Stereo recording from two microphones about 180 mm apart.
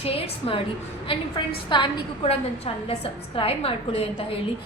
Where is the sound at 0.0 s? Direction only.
30° left (ahead or behind).